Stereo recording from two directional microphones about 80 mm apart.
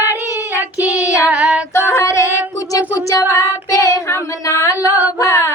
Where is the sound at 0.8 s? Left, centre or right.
Left.